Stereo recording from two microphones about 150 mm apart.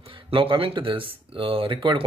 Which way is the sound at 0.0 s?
35° right (ahead or behind).